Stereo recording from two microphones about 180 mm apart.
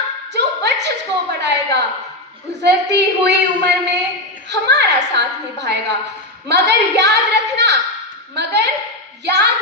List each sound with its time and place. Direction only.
0.3 s a woman's voice: 70° right (ahead or behind)